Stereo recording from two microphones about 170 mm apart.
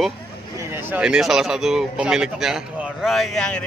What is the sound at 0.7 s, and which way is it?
A man's voice, 10° right (ahead or behind).